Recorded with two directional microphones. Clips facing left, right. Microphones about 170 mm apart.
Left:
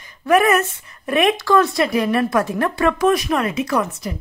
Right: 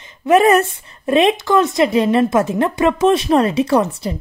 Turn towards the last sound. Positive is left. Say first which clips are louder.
# right 5 dB
turn(degrees=-30)  # may be behind; listen again after turning